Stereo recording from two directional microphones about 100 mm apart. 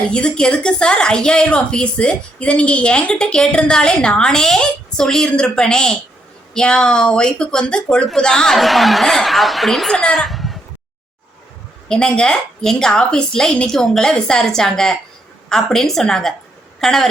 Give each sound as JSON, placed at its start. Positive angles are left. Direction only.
{"t": 0.1, "sound": "a woman's voice", "side_deg": 10}
{"t": 11.9, "sound": "a woman's voice", "side_deg": 5}